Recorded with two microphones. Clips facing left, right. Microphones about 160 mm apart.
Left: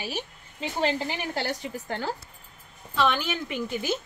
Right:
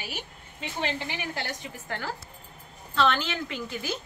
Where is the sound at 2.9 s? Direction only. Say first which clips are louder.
Even; 10° left (ahead or behind).